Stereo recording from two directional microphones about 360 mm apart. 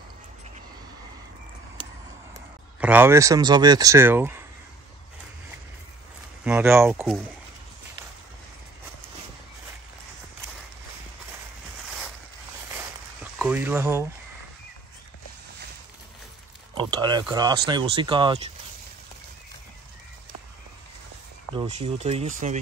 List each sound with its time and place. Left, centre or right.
2.8 s speech: centre
6.4 s speech: centre
12.7 s a sound: centre
16.7 s speech: centre
21.5 s speech: centre